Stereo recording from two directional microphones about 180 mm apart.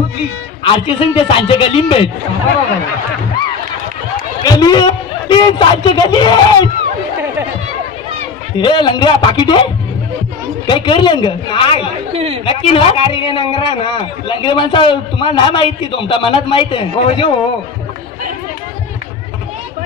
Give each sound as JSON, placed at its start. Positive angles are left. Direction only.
{"t": 0.7, "sound": "a man's voice", "side_deg": 30}
{"t": 4.4, "sound": "a man's voice", "side_deg": 20}
{"t": 8.5, "sound": "a man's voice", "side_deg": 25}
{"t": 10.7, "sound": "a man's voice", "side_deg": 25}
{"t": 12.1, "sound": "speech", "side_deg": -35}
{"t": 12.4, "sound": "a man's voice", "side_deg": 30}